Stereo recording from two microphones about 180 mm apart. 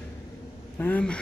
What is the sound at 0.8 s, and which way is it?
Speech, 5° left (ahead or behind).